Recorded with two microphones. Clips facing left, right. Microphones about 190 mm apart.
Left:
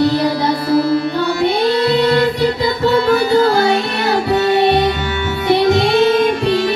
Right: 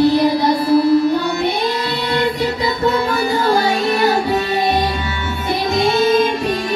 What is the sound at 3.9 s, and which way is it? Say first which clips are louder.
Music: even; 70° left (ahead or behind).